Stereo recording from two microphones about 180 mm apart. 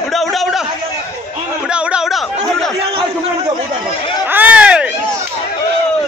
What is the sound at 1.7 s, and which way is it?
Speech, 5° right (ahead or behind).